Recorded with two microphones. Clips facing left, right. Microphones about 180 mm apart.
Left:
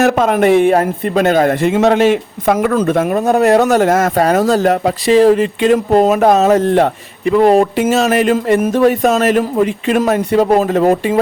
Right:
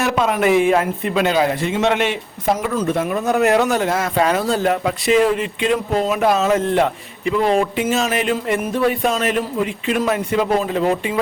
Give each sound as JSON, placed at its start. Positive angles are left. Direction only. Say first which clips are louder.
{"t": 0.0, "sound": "speech", "louder": "left 6 dB", "side_deg": 45}
{"t": 2.5, "sound": "speech", "louder": "left 6 dB", "side_deg": 60}